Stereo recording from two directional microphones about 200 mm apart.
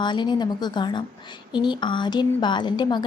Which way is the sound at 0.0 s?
20° left (ahead or behind).